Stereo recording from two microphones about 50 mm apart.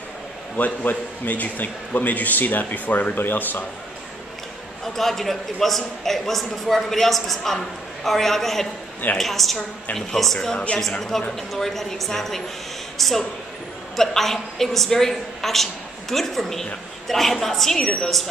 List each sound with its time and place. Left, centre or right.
0.6 s a man's voice: left
4.8 s a man's voice: centre